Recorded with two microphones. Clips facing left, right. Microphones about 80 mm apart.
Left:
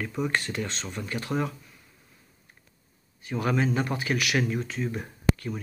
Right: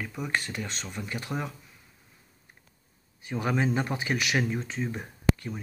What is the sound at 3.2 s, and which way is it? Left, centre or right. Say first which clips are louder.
Speech: left 1 dB; centre.